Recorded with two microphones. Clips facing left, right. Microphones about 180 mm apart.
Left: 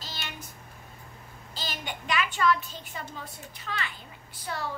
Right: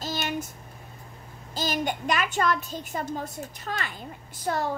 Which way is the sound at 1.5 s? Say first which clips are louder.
Right 10 dB; 45° right (ahead or behind).